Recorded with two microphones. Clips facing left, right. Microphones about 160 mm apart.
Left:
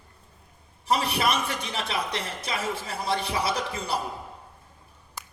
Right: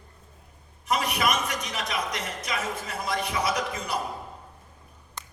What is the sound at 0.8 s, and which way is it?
A man's voice, 30° left (ahead or behind).